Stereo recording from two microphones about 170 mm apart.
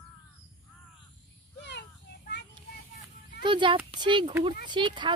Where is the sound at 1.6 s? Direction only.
90° left.